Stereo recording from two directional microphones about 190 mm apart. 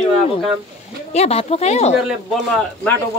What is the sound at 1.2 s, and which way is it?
Speech, 35° left (ahead or behind).